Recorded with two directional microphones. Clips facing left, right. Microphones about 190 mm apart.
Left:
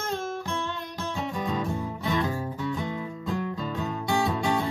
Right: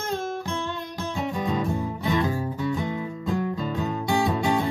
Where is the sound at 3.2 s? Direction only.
15° right (ahead or behind).